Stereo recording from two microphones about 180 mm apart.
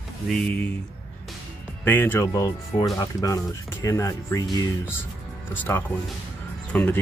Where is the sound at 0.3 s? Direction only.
5° left (ahead or behind).